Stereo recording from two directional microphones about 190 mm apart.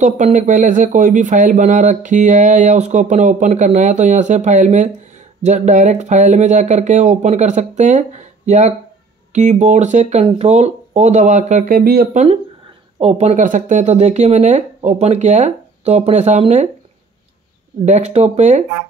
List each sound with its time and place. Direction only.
0.0 s speech: 40° right (ahead or behind)
13.0 s speech: 35° right (ahead or behind)
17.8 s speech: 35° right (ahead or behind)